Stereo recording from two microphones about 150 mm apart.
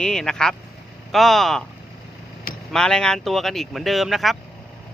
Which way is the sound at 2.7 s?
5° left (ahead or behind).